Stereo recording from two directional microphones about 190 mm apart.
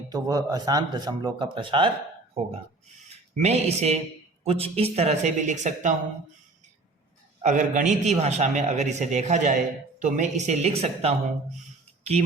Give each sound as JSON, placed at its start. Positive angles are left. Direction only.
{"t": 0.1, "sound": "a man's voice", "side_deg": -20}
{"t": 7.4, "sound": "a man's voice", "side_deg": -40}